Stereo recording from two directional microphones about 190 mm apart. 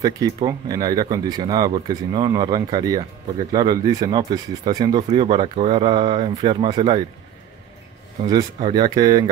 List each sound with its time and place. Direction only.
0.0 s speech: 20° right (ahead or behind)
8.2 s speech: 25° right (ahead or behind)